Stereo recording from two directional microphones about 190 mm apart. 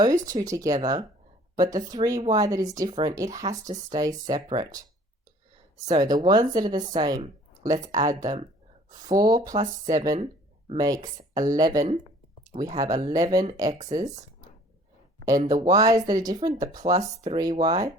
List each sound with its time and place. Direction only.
0.0 s speech: 20° right (ahead or behind)
5.9 s speech: 20° right (ahead or behind)
13.7 s speech: 35° right (ahead or behind)
15.3 s speech: 20° right (ahead or behind)